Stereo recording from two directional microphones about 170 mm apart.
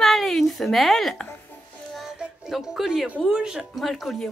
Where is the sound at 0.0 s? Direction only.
Centre (ahead or behind).